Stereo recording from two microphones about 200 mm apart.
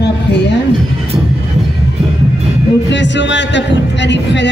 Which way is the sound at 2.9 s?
65° left (ahead or behind).